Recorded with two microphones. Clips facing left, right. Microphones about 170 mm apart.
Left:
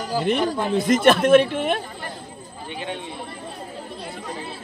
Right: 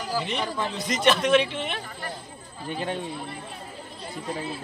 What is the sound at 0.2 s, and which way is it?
Speech, 50° left (ahead or behind).